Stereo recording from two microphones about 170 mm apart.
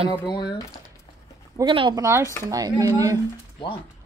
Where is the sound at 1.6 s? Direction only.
25° right (ahead or behind).